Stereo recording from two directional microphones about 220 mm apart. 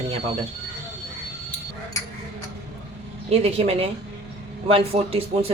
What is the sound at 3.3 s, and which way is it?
Speech, 25° right (ahead or behind).